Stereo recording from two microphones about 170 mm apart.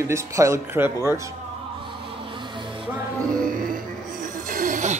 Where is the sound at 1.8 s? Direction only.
30° right (ahead or behind).